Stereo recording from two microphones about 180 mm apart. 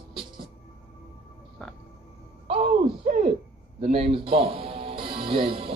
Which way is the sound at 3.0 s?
45° right (ahead or behind).